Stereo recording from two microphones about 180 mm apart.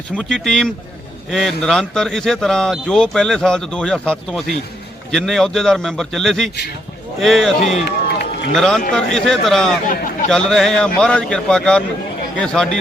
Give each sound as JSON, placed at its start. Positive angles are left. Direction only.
{"t": 0.2, "sound": "speech", "side_deg": 5}
{"t": 7.9, "sound": "run", "side_deg": 60}
{"t": 8.5, "sound": "speech", "side_deg": 5}